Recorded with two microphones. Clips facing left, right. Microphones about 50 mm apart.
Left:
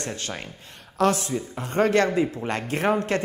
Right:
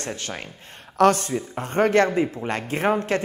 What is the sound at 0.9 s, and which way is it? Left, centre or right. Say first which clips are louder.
Speech: right 4 dB; right.